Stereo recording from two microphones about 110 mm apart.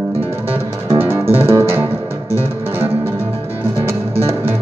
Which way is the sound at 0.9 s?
20° right (ahead or behind).